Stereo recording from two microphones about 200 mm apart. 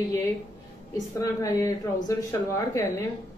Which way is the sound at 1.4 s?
15° left (ahead or behind).